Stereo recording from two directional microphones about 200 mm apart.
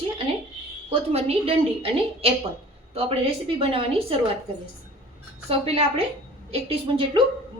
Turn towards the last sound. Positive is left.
turn(degrees=-25)  # may be behind; listen again after turning